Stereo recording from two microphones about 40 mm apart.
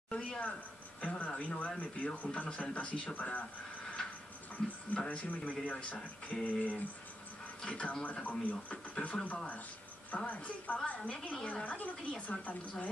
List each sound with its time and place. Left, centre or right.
0.1 s a sound: left
1.0 s speech: left
4.6 s speech: left
4.9 s speech: left
7.6 s speech: left